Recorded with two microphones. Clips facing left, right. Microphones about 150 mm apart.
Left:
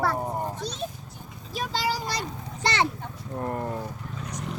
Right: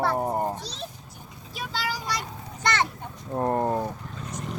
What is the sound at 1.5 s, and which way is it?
Speech, 40° left (ahead or behind).